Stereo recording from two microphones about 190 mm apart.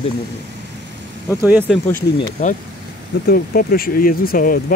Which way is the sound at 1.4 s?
10° right (ahead or behind).